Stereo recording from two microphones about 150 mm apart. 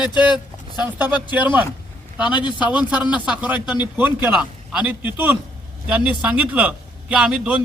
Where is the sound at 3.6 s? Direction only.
30° left (ahead or behind).